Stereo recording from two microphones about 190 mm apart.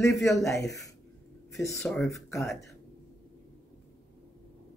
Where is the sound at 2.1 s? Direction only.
15° left (ahead or behind).